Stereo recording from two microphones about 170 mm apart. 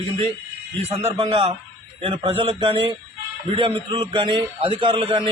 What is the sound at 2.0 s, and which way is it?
A man's voice, 35° right (ahead or behind).